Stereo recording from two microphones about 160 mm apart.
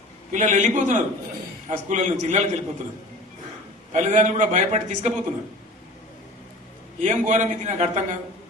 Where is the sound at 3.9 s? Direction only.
50° right (ahead or behind).